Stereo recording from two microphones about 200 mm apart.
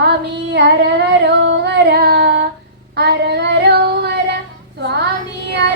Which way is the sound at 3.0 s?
55° right (ahead or behind).